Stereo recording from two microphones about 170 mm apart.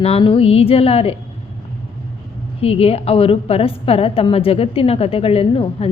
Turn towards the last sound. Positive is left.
turn(degrees=35)  # may be behind; listen again after turning